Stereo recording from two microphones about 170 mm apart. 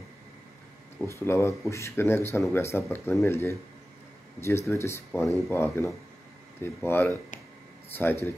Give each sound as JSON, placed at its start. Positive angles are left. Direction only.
{"t": 0.9, "sound": "speech", "side_deg": 15}